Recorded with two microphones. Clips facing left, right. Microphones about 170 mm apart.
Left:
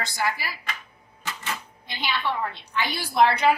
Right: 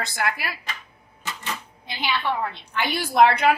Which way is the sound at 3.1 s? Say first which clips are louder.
Right 2 dB; 55° right (ahead or behind).